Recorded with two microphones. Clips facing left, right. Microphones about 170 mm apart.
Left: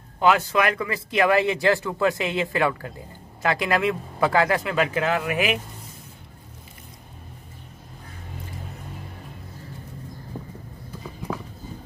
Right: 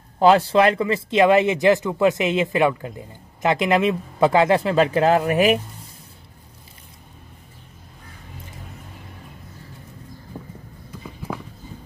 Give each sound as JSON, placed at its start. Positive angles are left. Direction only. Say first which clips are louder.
{"t": 0.2, "sound": "speech", "louder": "right 5 dB", "side_deg": -30}